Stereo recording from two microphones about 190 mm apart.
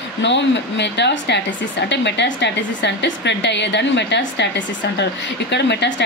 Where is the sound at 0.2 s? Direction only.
70° left (ahead or behind).